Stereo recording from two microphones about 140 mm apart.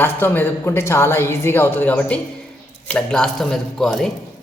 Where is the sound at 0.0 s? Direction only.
15° left (ahead or behind).